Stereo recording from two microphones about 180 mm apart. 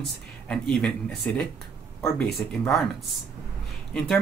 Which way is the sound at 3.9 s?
5° left (ahead or behind).